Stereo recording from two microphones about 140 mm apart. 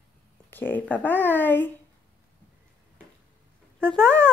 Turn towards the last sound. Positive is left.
turn(degrees=5)  # may be behind; listen again after turning